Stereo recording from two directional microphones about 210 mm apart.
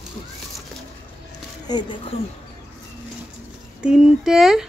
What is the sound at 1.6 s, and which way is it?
Speech, 20° left (ahead or behind).